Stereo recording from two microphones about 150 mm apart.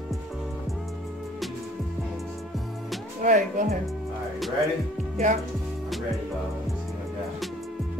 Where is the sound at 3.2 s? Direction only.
60° right (ahead or behind).